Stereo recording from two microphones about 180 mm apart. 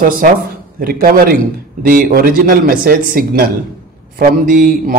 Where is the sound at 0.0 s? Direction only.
50° right (ahead or behind).